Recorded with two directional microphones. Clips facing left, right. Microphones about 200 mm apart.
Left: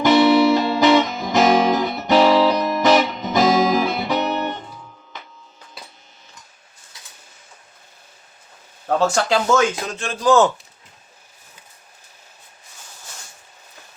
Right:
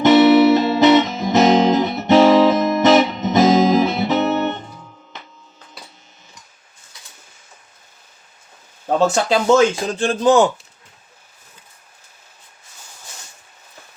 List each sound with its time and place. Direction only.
0.0 s music: 20° right (ahead or behind)
8.9 s speech: 20° right (ahead or behind)